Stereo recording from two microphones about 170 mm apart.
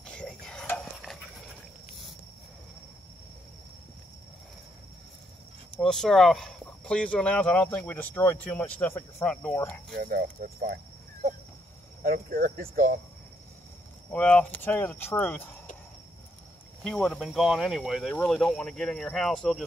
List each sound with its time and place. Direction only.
0.0 s cricket: 5° left (ahead or behind)
5.8 s speech: 5° left (ahead or behind)
9.9 s speech: 60° right (ahead or behind)
12.0 s speech: 60° right (ahead or behind)
14.1 s speech: 10° left (ahead or behind)
16.8 s speech: 5° left (ahead or behind)